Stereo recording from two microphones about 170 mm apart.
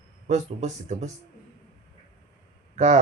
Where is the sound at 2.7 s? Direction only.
40° right (ahead or behind).